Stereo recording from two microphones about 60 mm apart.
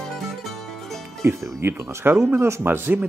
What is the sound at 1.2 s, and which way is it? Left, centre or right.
Speech, right.